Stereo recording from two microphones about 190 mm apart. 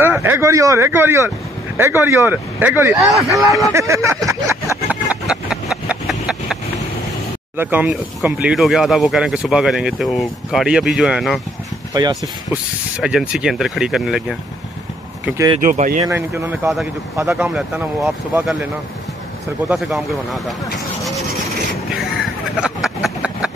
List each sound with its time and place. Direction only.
0.0 s speech: 10° right (ahead or behind)
5.1 s a sound: 5° right (ahead or behind)
7.5 s speech: 10° right (ahead or behind)
11.9 s speech: 20° right (ahead or behind)
12.9 s speech: 5° right (ahead or behind)
15.2 s speech: 15° right (ahead or behind)
15.6 s speech: 45° right (ahead or behind)
16.1 s speech: 10° right (ahead or behind)
19.7 s speech: centre (ahead or behind)
22.1 s a sound: centre (ahead or behind)